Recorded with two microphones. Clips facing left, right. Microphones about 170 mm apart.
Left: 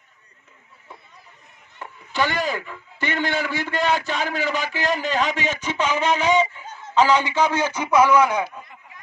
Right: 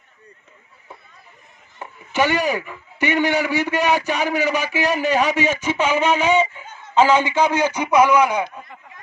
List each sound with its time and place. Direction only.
2.1 s a man's voice: 15° right (ahead or behind)